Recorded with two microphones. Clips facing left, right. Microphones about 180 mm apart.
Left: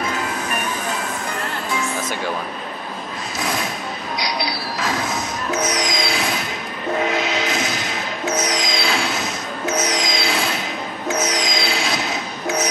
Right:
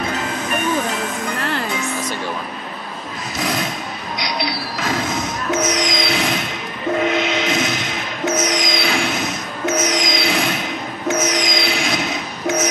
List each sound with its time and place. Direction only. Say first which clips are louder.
4.2 s train: right 2 dB; 20° right (ahead or behind)
7.1 s music: right 2 dB; 20° right (ahead or behind)